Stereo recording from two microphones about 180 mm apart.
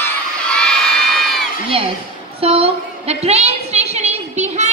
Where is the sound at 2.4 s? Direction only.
35° right (ahead or behind).